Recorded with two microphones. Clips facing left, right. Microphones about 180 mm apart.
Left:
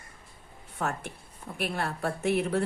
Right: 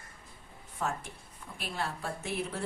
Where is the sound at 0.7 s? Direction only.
65° left (ahead or behind).